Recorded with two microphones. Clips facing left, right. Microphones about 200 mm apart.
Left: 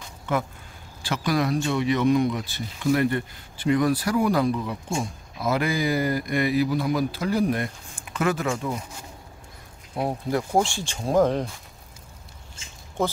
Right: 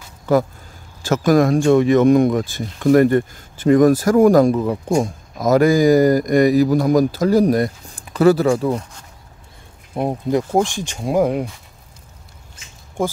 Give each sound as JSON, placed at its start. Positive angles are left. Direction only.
{"t": 0.3, "sound": "speech", "side_deg": -35}
{"t": 10.0, "sound": "speech", "side_deg": -20}
{"t": 12.6, "sound": "a sound", "side_deg": 25}